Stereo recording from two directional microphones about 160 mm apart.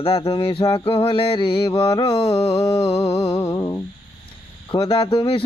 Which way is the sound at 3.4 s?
20° left (ahead or behind).